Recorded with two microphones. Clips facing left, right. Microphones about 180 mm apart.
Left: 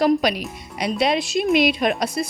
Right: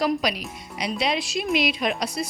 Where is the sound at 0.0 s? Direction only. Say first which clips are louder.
Left 6 dB; 50° left (ahead or behind).